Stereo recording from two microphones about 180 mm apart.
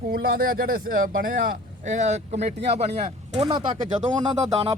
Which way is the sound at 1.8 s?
40° right (ahead or behind).